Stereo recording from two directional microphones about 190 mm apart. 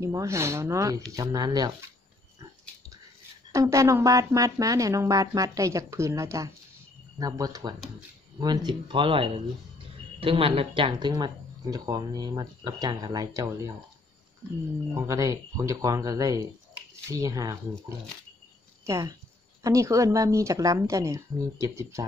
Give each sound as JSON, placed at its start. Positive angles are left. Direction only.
{"t": 0.0, "sound": "speech", "side_deg": -15}
{"t": 3.5, "sound": "speech", "side_deg": -15}
{"t": 15.0, "sound": "speech", "side_deg": -15}
{"t": 18.9, "sound": "speech", "side_deg": -15}